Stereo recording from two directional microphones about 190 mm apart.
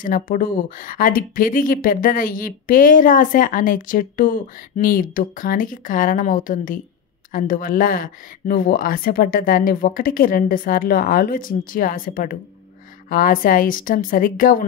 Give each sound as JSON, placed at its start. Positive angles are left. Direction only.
{"t": 0.0, "sound": "speech", "side_deg": 45}